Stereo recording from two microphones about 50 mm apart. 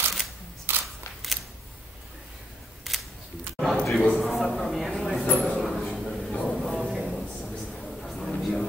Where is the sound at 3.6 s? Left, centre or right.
Centre.